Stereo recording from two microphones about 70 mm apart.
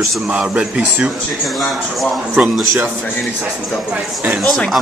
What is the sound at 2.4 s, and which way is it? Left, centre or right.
Speech, centre.